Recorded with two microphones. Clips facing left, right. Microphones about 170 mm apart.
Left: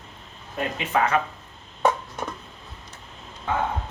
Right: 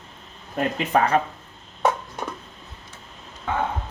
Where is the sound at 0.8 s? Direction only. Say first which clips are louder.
Right 2 dB; 35° right (ahead or behind).